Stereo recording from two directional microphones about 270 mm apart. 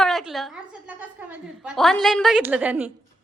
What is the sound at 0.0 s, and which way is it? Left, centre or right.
A woman's voice, centre.